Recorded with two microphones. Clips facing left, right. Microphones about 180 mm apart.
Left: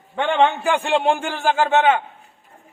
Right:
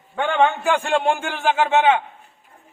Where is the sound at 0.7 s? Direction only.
15° left (ahead or behind).